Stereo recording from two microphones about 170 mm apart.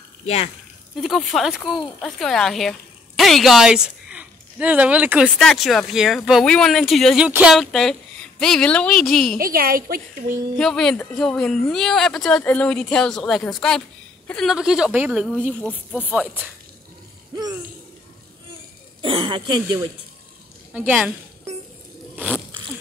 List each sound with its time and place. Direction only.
0.2 s speech: 40° left (ahead or behind)
0.9 s a woman's voice: centre (ahead or behind)
9.4 s a woman's voice: 60° right (ahead or behind)
10.6 s speech: 5° left (ahead or behind)
18.9 s speech: 30° right (ahead or behind)
20.7 s speech: 5° right (ahead or behind)
22.1 s a sound: 10° right (ahead or behind)